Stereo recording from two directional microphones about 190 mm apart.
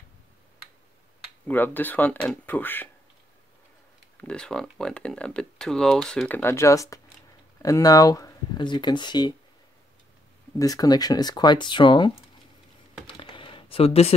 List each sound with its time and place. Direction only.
1.5 s speech: 10° left (ahead or behind)
4.2 s speech: 5° left (ahead or behind); by 9.3 s 25° left (ahead or behind)
10.6 s speech: 20° left (ahead or behind)
13.0 s typing: 25° left (ahead or behind)